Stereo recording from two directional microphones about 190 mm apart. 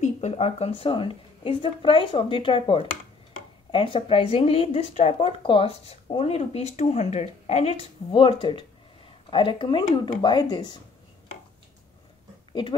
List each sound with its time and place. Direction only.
0.0 s a woman's voice: 35° left (ahead or behind)